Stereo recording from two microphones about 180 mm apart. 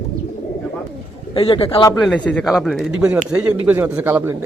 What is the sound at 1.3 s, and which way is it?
Speech, 30° left (ahead or behind).